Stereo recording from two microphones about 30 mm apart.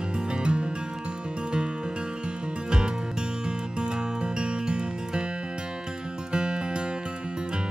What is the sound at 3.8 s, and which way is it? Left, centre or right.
Music, right.